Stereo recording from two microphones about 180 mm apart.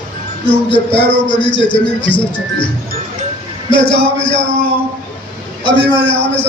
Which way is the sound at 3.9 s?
30° left (ahead or behind).